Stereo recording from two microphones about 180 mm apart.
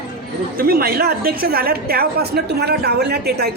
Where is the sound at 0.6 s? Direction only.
55° right (ahead or behind).